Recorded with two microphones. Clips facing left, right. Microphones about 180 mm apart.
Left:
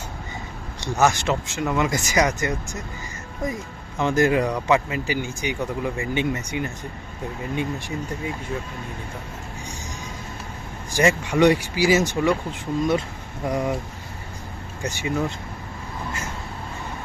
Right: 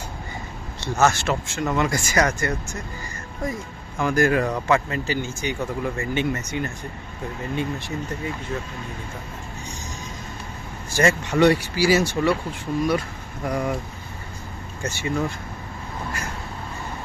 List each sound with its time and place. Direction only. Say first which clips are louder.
0.8 s speech: even; 15° left (ahead or behind)
4.0 s speech: left 1 dB; 20° left (ahead or behind)
10.9 s speech: even; 15° left (ahead or behind)
14.8 s speech: even; 15° left (ahead or behind)